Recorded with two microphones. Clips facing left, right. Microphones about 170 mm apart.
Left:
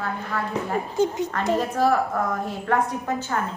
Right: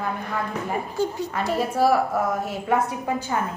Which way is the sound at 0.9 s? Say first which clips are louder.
Left 4 dB; 20° left (ahead or behind).